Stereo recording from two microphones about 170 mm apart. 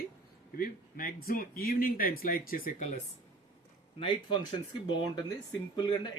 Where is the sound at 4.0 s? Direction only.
30° left (ahead or behind).